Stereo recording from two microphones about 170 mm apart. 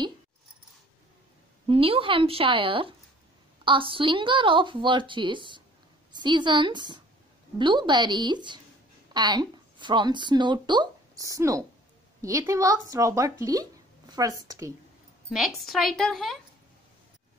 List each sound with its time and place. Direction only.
1.7 s a woman's voice: 30° right (ahead or behind)
15.3 s a woman's voice: centre (ahead or behind)